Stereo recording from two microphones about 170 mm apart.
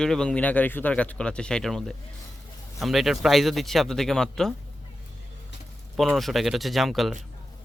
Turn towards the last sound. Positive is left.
turn(degrees=0)  # may be behind; listen again after turning